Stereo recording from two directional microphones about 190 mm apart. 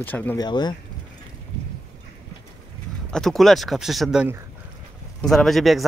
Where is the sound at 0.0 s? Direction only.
10° left (ahead or behind).